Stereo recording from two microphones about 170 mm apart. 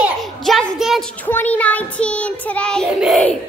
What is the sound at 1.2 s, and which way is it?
Child singing, 10° left (ahead or behind).